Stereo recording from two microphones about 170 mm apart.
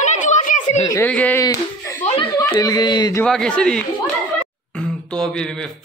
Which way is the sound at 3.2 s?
5° left (ahead or behind).